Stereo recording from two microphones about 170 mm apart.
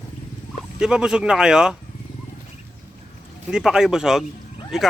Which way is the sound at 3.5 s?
5° right (ahead or behind).